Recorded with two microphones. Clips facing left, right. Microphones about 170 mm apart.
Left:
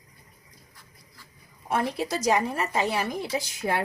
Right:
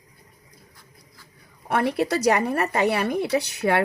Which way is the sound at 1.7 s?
65° right (ahead or behind).